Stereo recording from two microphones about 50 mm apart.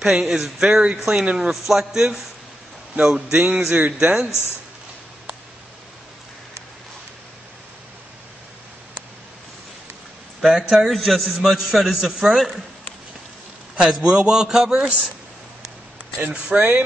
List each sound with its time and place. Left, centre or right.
0.0 s a man's voice: centre
1.2 s speech: centre
1.5 s a man's voice: centre
10.7 s a man's voice: centre
13.7 s a man's voice: centre
16.3 s speech: right